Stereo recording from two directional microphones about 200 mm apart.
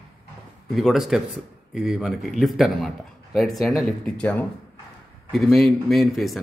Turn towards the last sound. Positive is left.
turn(degrees=0)  # may be behind; listen again after turning